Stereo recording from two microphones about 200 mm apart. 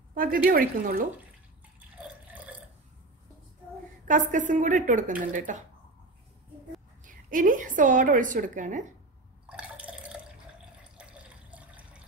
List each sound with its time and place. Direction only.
0.1 s speech: 45° right (ahead or behind)
2.3 s burping: 5° right (ahead or behind)
4.1 s a woman's voice: 40° right (ahead or behind)
7.1 s a woman's voice: 40° right (ahead or behind)
9.5 s drip: 5° right (ahead or behind)
11.0 s water: 5° right (ahead or behind)